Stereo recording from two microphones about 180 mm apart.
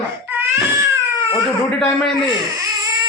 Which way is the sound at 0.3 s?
10° right (ahead or behind).